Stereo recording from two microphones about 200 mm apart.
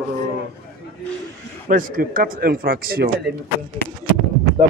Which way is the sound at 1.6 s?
45° right (ahead or behind).